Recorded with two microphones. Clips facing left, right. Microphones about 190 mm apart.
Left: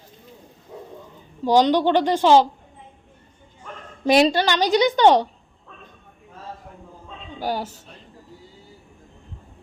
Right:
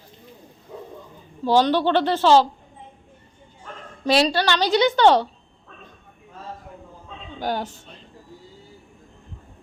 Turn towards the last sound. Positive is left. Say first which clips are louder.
# even
turn(degrees=10)  # may be behind; listen again after turning